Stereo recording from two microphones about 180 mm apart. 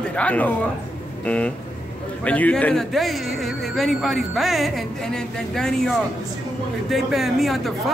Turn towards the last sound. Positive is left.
turn(degrees=0)  # may be behind; listen again after turning